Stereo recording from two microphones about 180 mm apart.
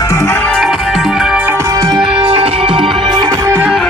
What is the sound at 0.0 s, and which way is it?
Music, 15° left (ahead or behind).